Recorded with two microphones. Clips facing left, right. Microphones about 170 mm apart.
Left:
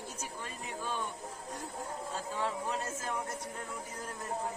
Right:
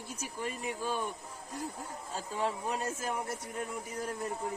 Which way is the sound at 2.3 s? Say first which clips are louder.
Right 2 dB; 15° right (ahead or behind).